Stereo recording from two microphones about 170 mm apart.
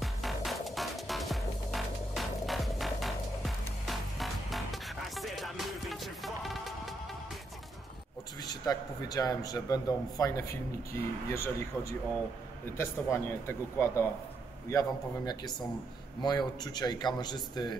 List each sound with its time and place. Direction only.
0.0 s music: centre (ahead or behind)
8.5 s a man's voice: 20° left (ahead or behind)